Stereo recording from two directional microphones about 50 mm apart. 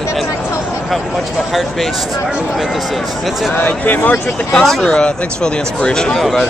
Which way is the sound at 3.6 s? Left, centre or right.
Left.